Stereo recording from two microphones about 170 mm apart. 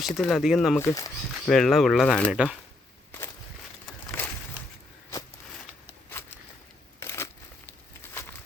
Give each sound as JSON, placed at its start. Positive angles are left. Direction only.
{"t": 0.0, "sound": "speech", "side_deg": 0}
{"t": 0.8, "sound": "speech", "side_deg": 20}
{"t": 1.5, "sound": "speech", "side_deg": 0}
{"t": 3.8, "sound": "a sound", "side_deg": 10}
{"t": 6.2, "sound": "a sound", "side_deg": 15}
{"t": 7.0, "sound": "crushing", "side_deg": 15}